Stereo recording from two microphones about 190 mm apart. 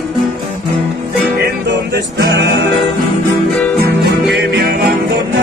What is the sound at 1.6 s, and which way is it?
Music, 60° right (ahead or behind).